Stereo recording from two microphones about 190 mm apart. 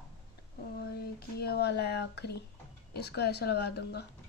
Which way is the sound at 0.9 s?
55° left (ahead or behind).